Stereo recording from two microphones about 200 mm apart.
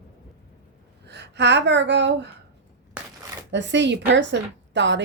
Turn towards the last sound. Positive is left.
turn(degrees=-65)  # may be behind; listen again after turning